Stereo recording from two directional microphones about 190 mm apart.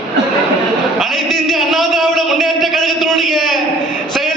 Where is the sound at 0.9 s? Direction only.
Centre (ahead or behind).